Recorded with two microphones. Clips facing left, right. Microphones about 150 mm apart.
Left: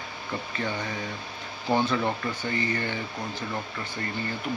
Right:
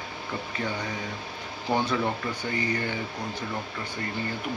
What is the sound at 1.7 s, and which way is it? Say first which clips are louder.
Speech: left 1 dB; 15° right (ahead or behind).